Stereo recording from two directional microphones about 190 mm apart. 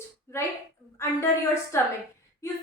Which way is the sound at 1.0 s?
15° left (ahead or behind).